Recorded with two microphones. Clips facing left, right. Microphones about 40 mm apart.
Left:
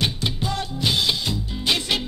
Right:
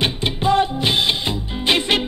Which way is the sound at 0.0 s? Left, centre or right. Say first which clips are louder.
Right 5 dB; right.